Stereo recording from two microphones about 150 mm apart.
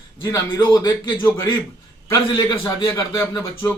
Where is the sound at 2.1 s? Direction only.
25° left (ahead or behind).